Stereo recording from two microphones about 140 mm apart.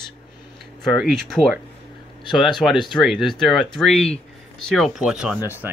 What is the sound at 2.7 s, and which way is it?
Speech, 35° left (ahead or behind).